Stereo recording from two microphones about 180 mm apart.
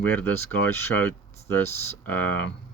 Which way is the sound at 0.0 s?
10° left (ahead or behind).